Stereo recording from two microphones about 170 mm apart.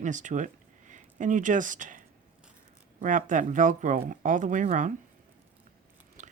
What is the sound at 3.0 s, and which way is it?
Speech, 50° right (ahead or behind).